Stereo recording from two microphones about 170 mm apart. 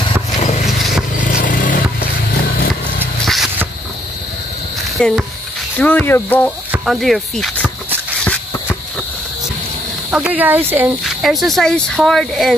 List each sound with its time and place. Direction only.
0.4 s vehicle: 40° left (ahead or behind)
0.7 s vehicle: centre (ahead or behind)
1.2 s vehicle: 50° left (ahead or behind)
4.8 s a sound: centre (ahead or behind)
5.8 s speech: 10° left (ahead or behind)
10.1 s speech: 10° right (ahead or behind)
11.1 s speech: centre (ahead or behind)